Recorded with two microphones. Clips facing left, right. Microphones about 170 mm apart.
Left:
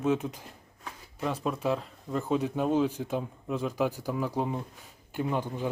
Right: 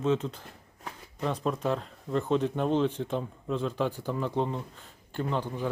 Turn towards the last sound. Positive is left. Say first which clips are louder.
# left 1 dB
turn(degrees=10)  # may be behind; listen again after turning